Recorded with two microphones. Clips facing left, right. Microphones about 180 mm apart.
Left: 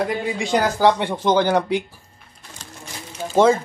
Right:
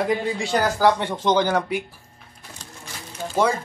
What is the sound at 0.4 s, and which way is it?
Speech, 20° left (ahead or behind).